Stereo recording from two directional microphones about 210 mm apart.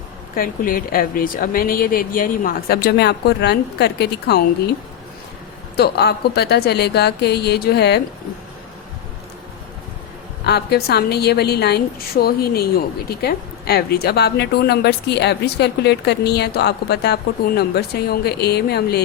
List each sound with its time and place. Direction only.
0.3 s a woman's voice: 40° left (ahead or behind)
5.7 s a woman's voice: 50° left (ahead or behind)
10.4 s a woman's voice: 50° left (ahead or behind)